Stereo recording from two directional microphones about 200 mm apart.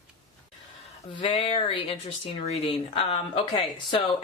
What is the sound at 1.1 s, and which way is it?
Speech, 25° left (ahead or behind).